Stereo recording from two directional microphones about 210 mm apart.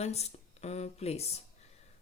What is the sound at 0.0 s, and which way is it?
Speech, 30° left (ahead or behind).